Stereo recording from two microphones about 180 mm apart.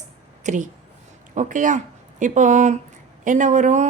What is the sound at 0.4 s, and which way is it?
Speech, 45° right (ahead or behind).